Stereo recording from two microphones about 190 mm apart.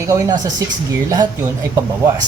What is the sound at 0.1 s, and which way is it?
Speech, 20° right (ahead or behind).